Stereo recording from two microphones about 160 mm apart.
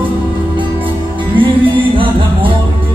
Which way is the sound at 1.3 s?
30° right (ahead or behind).